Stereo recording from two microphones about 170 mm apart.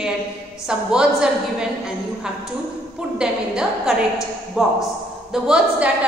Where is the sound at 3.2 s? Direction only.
5° right (ahead or behind).